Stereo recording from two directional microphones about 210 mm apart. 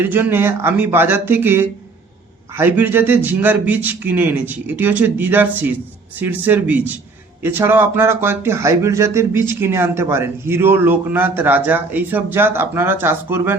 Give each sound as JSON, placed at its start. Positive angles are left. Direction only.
{"t": 0.0, "sound": "speech", "side_deg": -10}